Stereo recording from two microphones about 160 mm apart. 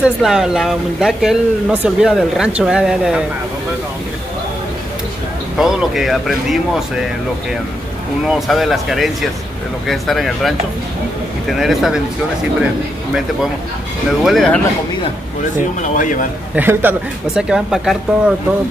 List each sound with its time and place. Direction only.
0.0 s speech: 5° right (ahead or behind)
5.6 s speech: centre (ahead or behind)
8.3 s speech: centre (ahead or behind)
14.2 s speech: centre (ahead or behind)
15.8 s a man's voice: 55° left (ahead or behind)
16.5 s speech: 10° right (ahead or behind)